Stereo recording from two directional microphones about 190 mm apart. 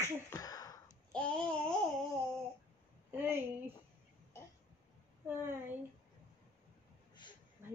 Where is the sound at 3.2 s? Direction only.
10° right (ahead or behind).